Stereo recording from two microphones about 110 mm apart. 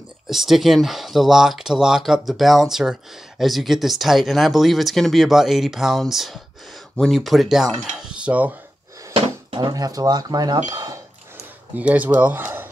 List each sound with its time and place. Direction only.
0.3 s speech: centre (ahead or behind)
9.1 s drawer open or close: 55° right (ahead or behind)
9.7 s speech: 35° right (ahead or behind)
11.7 s speech: 15° right (ahead or behind)